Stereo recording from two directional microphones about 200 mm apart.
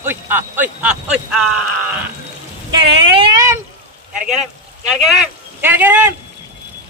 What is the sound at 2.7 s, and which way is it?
Speech, 20° right (ahead or behind).